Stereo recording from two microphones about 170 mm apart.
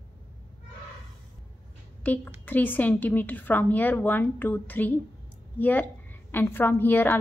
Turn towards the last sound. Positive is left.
turn(degrees=10)  # may be behind; listen again after turning